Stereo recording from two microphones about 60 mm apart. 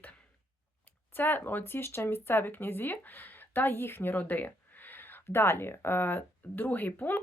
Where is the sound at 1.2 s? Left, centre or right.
Left.